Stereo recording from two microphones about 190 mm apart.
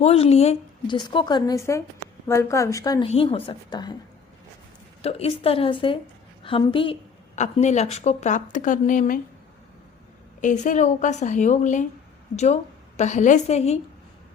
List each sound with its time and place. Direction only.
0.0 s a woman's voice: 35° left (ahead or behind)
5.0 s a woman's voice: 30° left (ahead or behind)
7.3 s a woman's voice: 35° left (ahead or behind)
10.4 s a woman's voice: 40° left (ahead or behind)